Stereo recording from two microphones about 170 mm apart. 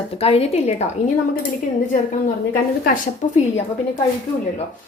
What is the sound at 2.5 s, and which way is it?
A woman's voice, 55° left (ahead or behind).